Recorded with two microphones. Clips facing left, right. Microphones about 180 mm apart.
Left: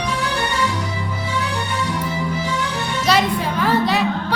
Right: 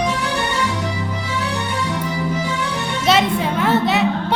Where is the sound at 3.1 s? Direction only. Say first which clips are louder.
Right 2 dB; 20° right (ahead or behind).